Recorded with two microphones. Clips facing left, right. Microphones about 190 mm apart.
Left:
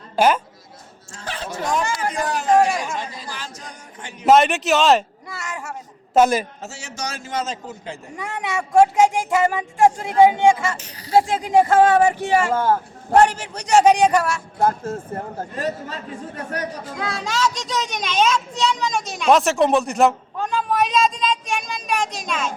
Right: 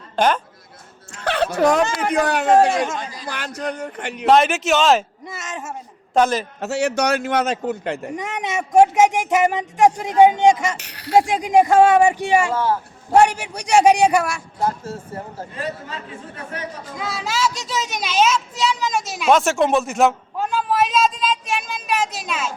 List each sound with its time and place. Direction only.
0.2 s a man's voice: 10° left (ahead or behind)
1.1 s music: 70° right (ahead or behind)
1.9 s a man's voice: 65° right (ahead or behind)
4.3 s a child's voice: centre (ahead or behind)
5.2 s speech: 20° right (ahead or behind)
6.1 s a man's voice: 10° left (ahead or behind)
6.6 s a man's voice: 65° right (ahead or behind)
8.1 s speech: 20° right (ahead or behind)
10.8 s a man's voice: 70° right (ahead or behind)
11.1 s speech: 15° right (ahead or behind)
12.5 s a man's voice: 50° left (ahead or behind)
13.1 s speech: 15° right (ahead or behind)
14.6 s a man's voice: 50° left (ahead or behind)
17.0 s a child's voice: 5° right (ahead or behind)